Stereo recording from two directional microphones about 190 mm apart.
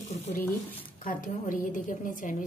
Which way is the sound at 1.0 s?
45° left (ahead or behind).